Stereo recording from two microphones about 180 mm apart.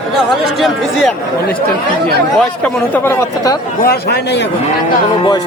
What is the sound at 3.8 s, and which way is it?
Speech, 60° left (ahead or behind).